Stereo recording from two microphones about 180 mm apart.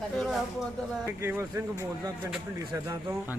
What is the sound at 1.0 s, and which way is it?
Speech, 15° right (ahead or behind).